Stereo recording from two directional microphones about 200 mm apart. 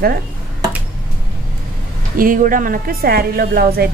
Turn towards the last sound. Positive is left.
turn(degrees=-50)  # may be behind; listen again after turning